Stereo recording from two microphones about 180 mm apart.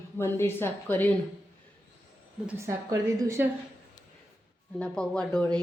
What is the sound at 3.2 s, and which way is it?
Speech, 15° right (ahead or behind).